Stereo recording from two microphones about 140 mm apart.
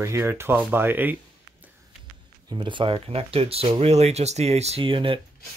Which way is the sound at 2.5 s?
35° right (ahead or behind).